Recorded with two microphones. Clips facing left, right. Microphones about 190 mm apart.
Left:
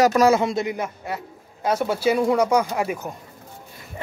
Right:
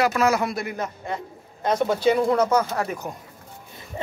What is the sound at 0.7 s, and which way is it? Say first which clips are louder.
Speech: left 1 dB; 10° left (ahead or behind).